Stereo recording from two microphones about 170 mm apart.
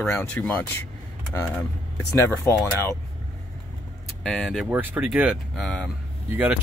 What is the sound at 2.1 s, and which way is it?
Speech, 15° left (ahead or behind).